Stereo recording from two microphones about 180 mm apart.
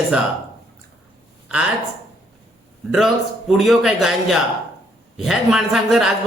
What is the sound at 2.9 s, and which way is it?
Speech, centre (ahead or behind).